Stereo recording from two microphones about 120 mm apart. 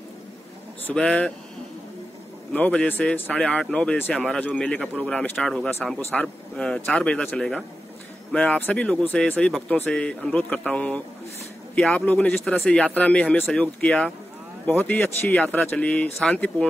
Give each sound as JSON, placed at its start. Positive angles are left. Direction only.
{"t": 0.8, "sound": "speech", "side_deg": 5}
{"t": 2.5, "sound": "speech", "side_deg": 10}